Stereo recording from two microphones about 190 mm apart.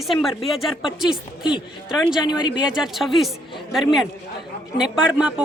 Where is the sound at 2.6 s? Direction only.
5° right (ahead or behind).